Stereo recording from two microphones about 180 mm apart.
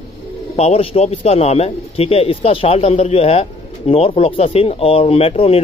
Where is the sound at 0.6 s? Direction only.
35° left (ahead or behind).